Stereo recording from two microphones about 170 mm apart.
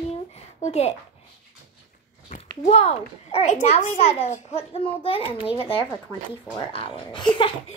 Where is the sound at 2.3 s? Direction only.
50° left (ahead or behind).